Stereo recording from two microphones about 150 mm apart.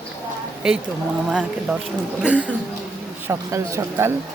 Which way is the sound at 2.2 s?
10° right (ahead or behind).